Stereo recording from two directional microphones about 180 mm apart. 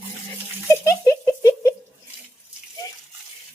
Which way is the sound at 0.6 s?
15° left (ahead or behind).